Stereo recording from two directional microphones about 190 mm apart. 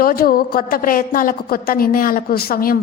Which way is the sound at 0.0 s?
50° left (ahead or behind).